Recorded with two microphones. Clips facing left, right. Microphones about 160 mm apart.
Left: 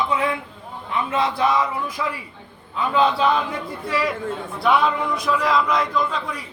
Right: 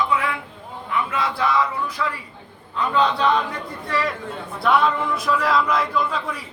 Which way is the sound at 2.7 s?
5° left (ahead or behind).